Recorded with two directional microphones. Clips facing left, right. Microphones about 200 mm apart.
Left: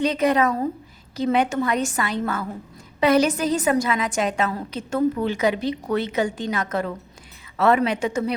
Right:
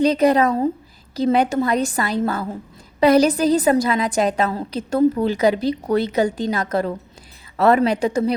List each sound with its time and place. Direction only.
0.0 s a woman's voice: 35° right (ahead or behind)